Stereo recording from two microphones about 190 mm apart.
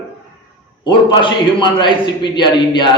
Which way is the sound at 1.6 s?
25° left (ahead or behind).